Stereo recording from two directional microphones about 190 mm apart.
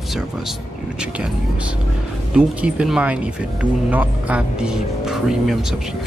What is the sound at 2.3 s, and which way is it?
Speech, 5° right (ahead or behind).